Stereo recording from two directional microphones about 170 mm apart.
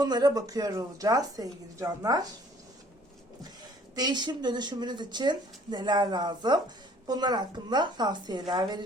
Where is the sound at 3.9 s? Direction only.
25° right (ahead or behind).